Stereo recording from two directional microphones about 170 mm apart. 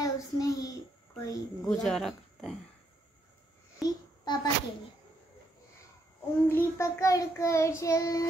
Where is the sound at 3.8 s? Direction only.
25° left (ahead or behind).